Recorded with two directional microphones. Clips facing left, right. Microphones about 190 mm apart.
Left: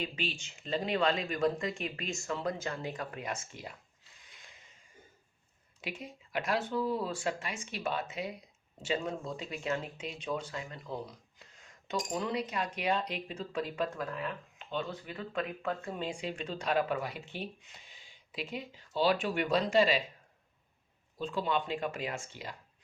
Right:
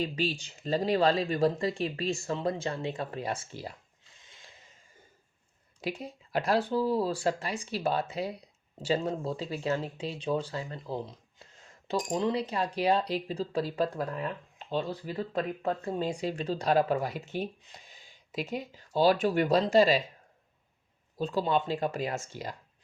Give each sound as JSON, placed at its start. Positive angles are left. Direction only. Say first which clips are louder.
{"t": 0.0, "sound": "speech", "louder": "right 6 dB", "side_deg": -35}
{"t": 4.2, "sound": "a sound", "louder": "right 3 dB", "side_deg": -25}
{"t": 5.8, "sound": "speech", "louder": "right 7 dB", "side_deg": -35}
{"t": 21.2, "sound": "speech", "louder": "right 5 dB", "side_deg": -40}